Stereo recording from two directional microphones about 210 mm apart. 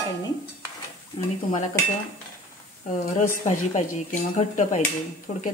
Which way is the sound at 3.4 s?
35° left (ahead or behind).